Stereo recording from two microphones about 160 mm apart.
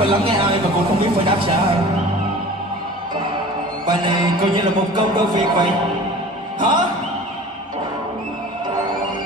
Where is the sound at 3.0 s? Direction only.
30° right (ahead or behind).